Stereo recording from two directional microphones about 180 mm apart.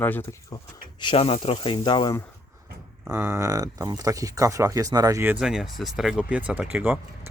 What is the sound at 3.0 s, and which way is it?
Speech, 15° right (ahead or behind).